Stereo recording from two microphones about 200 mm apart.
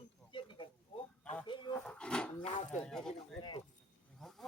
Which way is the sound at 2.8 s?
5° left (ahead or behind).